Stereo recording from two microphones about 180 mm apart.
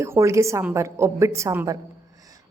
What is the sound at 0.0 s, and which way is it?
Speech, 15° right (ahead or behind).